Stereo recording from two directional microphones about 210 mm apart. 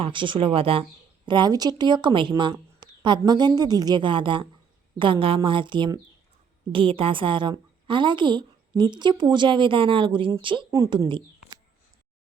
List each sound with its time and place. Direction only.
0.0 s a woman's voice: 25° right (ahead or behind)